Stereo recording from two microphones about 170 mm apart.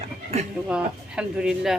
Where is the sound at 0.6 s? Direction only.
5° right (ahead or behind).